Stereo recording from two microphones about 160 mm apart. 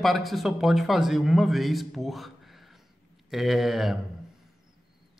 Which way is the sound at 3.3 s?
Centre (ahead or behind).